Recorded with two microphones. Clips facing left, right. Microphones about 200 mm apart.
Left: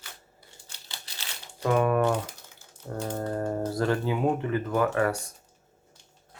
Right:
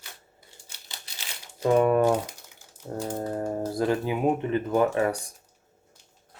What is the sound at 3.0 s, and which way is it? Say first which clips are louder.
Speech: even; 15° right (ahead or behind).